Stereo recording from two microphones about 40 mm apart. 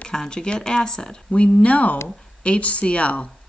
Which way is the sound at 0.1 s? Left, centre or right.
Centre.